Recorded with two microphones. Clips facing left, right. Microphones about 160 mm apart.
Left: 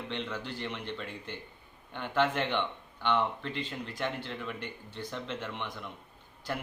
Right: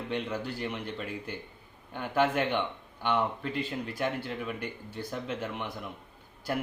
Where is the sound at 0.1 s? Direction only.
10° right (ahead or behind).